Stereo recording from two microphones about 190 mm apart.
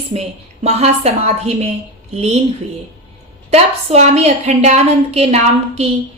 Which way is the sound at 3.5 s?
35° right (ahead or behind).